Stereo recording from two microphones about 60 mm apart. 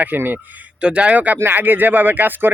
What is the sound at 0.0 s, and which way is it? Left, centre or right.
Speech, right.